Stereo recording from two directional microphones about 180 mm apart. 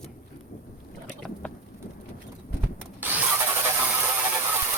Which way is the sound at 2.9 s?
10° right (ahead or behind).